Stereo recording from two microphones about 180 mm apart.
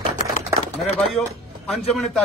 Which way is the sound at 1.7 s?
Centre (ahead or behind).